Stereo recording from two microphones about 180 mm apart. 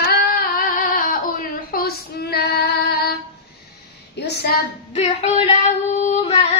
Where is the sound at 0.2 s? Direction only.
55° left (ahead or behind).